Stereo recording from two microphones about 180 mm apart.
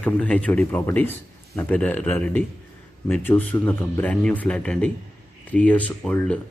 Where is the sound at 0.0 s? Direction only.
5° left (ahead or behind).